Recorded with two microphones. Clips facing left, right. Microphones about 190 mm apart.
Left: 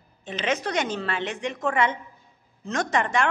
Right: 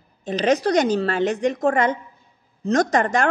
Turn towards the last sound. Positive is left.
turn(degrees=-40)  # may be behind; listen again after turning